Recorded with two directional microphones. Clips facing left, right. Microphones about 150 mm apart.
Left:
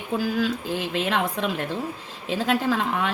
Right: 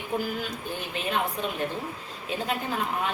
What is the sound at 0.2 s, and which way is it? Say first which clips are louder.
A woman's voice: left 7 dB; 90° left.